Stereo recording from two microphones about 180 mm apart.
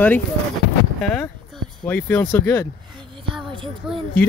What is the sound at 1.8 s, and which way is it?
Speech, 10° left (ahead or behind).